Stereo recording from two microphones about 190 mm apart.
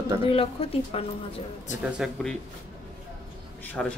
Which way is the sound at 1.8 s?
5° right (ahead or behind).